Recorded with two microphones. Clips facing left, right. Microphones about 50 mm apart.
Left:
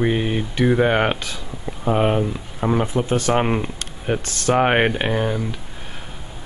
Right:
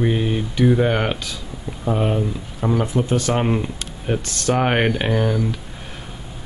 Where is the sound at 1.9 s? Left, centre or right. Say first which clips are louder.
Left 2 dB; left.